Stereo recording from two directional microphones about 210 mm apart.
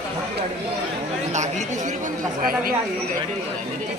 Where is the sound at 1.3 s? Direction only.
35° right (ahead or behind).